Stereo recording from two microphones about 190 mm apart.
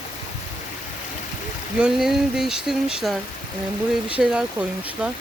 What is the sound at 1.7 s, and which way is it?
Speech, 5° right (ahead or behind).